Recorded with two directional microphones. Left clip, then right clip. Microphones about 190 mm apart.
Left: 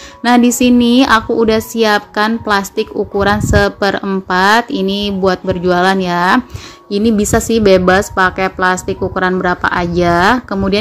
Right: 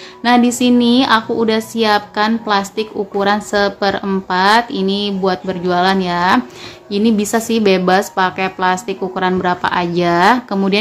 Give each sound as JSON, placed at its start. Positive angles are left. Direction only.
{"t": 0.2, "sound": "a woman's voice", "side_deg": 30}